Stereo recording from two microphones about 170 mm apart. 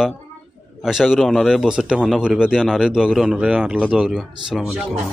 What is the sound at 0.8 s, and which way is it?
Speech, centre (ahead or behind).